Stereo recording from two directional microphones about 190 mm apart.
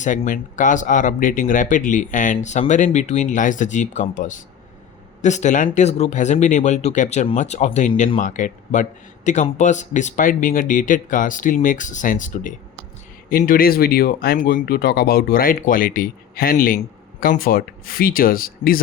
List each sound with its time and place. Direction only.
0.0 s speech: 40° left (ahead or behind)